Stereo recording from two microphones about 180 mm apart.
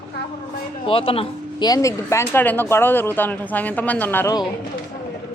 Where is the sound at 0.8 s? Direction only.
30° left (ahead or behind); by 4.3 s 10° left (ahead or behind).